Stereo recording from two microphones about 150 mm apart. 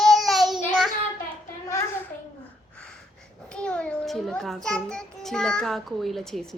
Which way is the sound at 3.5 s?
5° left (ahead or behind).